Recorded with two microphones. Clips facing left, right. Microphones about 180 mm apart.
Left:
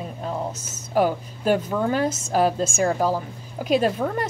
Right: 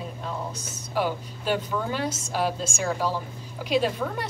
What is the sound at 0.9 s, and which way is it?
A woman's voice, 45° left (ahead or behind).